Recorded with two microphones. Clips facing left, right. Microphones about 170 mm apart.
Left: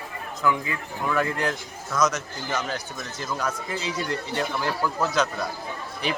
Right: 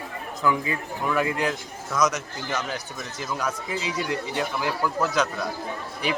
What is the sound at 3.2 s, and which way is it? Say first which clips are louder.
Speech: even; 10° right (ahead or behind).